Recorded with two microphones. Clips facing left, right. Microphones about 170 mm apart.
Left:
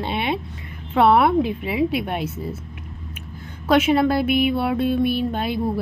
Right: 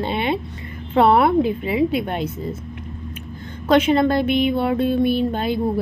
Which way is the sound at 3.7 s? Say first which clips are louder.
Right 1 dB; 5° left (ahead or behind).